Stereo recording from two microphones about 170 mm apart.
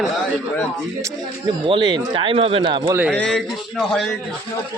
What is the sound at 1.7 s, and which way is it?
Speech, 30° right (ahead or behind).